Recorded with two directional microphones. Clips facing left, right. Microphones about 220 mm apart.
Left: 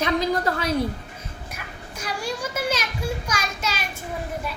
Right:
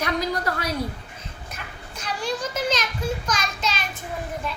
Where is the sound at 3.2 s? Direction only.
10° left (ahead or behind).